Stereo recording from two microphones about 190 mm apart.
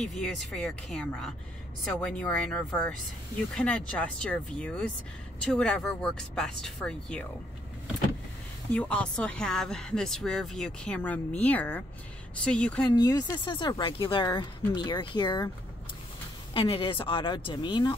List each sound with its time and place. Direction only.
0.0 s speech: centre (ahead or behind)
8.7 s speech: 5° left (ahead or behind)
12.9 s speech: 20° left (ahead or behind)
16.5 s speech: 25° left (ahead or behind)